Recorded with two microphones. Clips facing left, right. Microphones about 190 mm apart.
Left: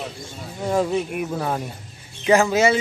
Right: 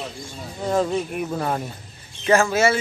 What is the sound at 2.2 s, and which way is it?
Speech, 15° left (ahead or behind).